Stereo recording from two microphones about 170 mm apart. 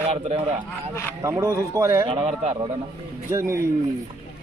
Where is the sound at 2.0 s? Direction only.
30° right (ahead or behind).